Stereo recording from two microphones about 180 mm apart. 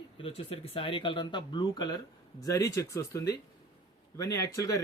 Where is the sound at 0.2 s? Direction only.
30° left (ahead or behind).